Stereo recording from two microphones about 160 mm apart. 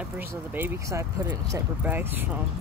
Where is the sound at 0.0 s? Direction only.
10° right (ahead or behind).